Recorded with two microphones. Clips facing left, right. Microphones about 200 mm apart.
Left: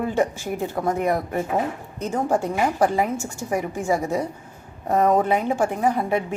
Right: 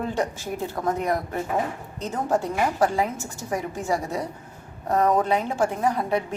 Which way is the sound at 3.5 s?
15° left (ahead or behind).